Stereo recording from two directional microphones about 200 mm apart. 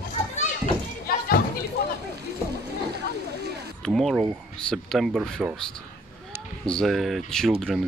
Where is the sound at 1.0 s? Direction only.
50° left (ahead or behind).